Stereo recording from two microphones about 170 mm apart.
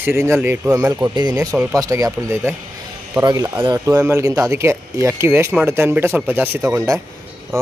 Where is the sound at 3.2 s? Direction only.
25° right (ahead or behind).